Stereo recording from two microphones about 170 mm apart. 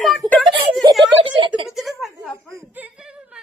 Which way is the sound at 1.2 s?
30° right (ahead or behind).